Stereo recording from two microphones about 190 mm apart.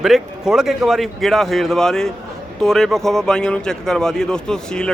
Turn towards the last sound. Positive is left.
turn(degrees=5)  # may be behind; listen again after turning